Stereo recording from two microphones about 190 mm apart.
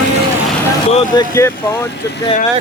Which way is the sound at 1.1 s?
15° left (ahead or behind).